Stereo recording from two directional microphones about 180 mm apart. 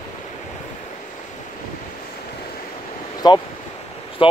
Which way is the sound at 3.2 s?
25° left (ahead or behind).